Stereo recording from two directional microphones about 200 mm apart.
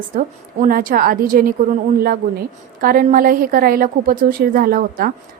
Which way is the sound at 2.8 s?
45° right (ahead or behind).